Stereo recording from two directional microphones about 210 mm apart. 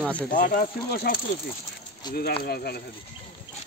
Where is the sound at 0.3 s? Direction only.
45° left (ahead or behind).